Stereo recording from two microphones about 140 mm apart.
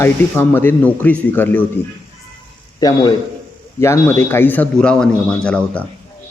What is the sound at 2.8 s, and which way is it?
A man's voice, 25° left (ahead or behind).